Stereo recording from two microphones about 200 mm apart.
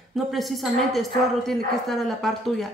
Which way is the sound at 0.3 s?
Centre (ahead or behind).